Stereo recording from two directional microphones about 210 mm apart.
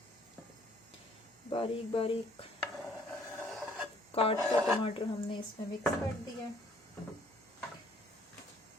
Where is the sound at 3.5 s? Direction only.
Centre (ahead or behind).